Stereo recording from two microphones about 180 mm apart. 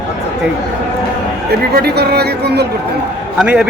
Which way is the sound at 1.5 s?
60° right (ahead or behind).